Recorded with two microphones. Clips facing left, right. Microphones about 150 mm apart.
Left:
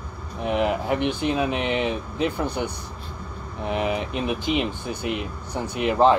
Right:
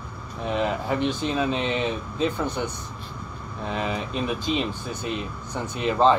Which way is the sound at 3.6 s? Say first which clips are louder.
Left 3 dB; 15° left (ahead or behind).